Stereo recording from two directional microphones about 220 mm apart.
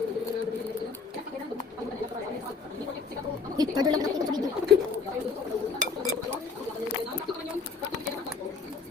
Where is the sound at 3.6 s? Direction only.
15° right (ahead or behind).